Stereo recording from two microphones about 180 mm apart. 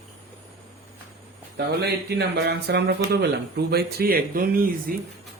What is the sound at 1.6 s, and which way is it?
Speech, 65° right (ahead or behind).